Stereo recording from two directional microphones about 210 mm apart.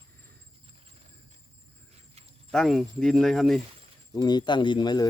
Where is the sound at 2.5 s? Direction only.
Centre (ahead or behind).